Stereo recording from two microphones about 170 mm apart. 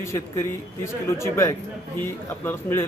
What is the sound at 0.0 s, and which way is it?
A man's voice, 15° left (ahead or behind).